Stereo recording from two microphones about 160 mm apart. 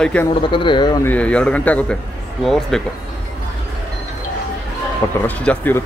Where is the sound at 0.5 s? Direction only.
30° left (ahead or behind).